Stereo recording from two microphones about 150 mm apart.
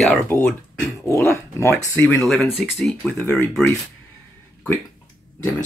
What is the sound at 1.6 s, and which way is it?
Speech, 15° left (ahead or behind).